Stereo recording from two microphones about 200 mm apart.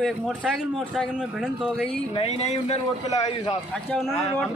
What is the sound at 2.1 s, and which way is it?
Speech, 30° left (ahead or behind).